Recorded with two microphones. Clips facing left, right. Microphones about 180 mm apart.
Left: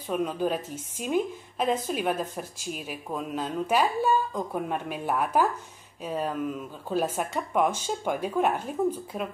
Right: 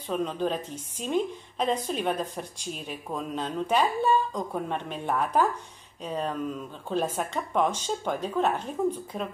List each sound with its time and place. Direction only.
0.1 s speech: 10° left (ahead or behind)